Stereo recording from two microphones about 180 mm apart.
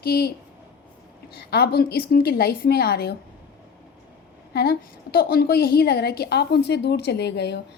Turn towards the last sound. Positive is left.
turn(degrees=65)  # may be behind; listen again after turning